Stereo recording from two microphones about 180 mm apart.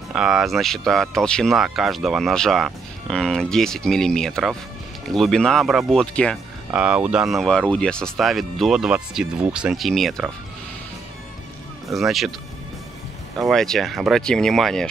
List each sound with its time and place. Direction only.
0.1 s speech: centre (ahead or behind)
11.9 s speech: centre (ahead or behind)
13.4 s speech: centre (ahead or behind)